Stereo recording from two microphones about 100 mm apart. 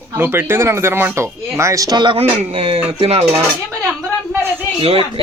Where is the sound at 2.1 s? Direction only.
80° right.